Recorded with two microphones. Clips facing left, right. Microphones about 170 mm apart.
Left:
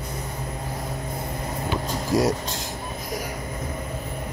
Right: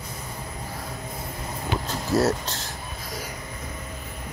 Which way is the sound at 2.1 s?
15° left (ahead or behind).